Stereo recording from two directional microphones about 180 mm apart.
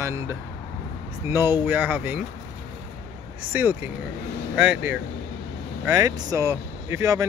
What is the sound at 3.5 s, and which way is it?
Speech, 10° right (ahead or behind).